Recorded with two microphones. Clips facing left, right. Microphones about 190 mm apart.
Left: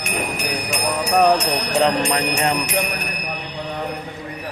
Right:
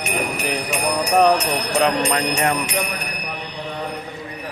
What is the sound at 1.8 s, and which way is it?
Speech, 20° left (ahead or behind).